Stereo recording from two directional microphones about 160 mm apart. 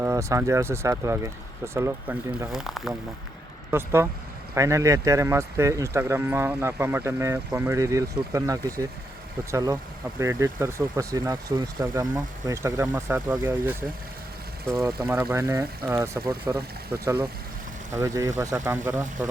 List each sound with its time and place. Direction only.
0.0 s speech: 20° right (ahead or behind)
2.5 s speech: 5° right (ahead or behind)
3.7 s speech: 15° right (ahead or behind)
14.7 s speech: 5° left (ahead or behind)
15.1 s speech: 20° right (ahead or behind)